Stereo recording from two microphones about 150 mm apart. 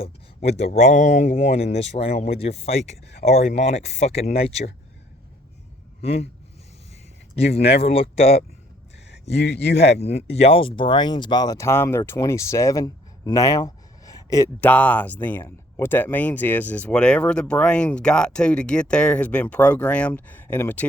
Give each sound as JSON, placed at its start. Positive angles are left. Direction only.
{"t": 0.0, "sound": "speech", "side_deg": 45}
{"t": 6.0, "sound": "speech", "side_deg": 45}
{"t": 7.6, "sound": "speech", "side_deg": 90}
{"t": 7.9, "sound": "speech", "side_deg": 40}
{"t": 9.8, "sound": "speech", "side_deg": 45}
{"t": 14.6, "sound": "speech", "side_deg": 10}